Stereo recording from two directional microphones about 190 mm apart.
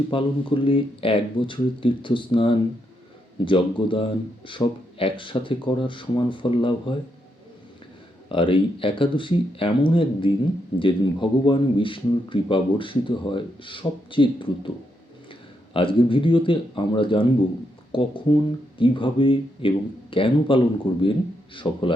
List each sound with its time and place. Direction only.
0.1 s a man's voice: 25° left (ahead or behind)
8.3 s a man's voice: 25° left (ahead or behind)